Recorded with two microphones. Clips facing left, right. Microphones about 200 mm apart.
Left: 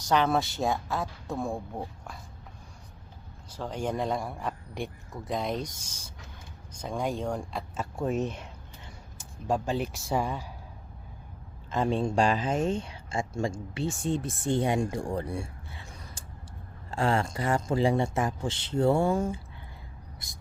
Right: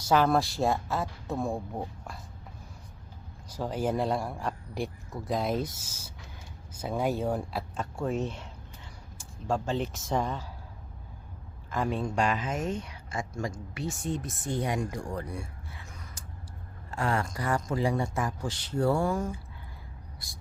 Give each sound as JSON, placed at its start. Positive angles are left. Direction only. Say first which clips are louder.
{"t": 0.1, "sound": "a man's voice", "louder": "right 1 dB", "side_deg": 0}
{"t": 3.5, "sound": "a man's voice", "louder": "right 2 dB", "side_deg": -10}
{"t": 7.9, "sound": "speech", "louder": "left 2 dB", "side_deg": 20}
{"t": 11.7, "sound": "a man's voice", "louder": "left 3 dB", "side_deg": 25}